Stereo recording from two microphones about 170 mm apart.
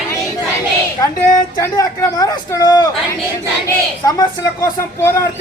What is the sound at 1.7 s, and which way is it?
A man's voice, 20° left (ahead or behind).